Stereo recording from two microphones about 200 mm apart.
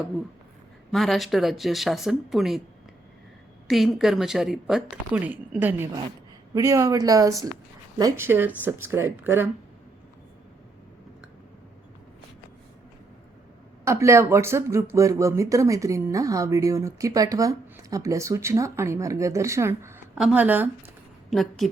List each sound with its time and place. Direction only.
0.9 s a woman's voice: centre (ahead or behind)
3.7 s a woman's voice: centre (ahead or behind)
13.8 s a woman's voice: 15° right (ahead or behind)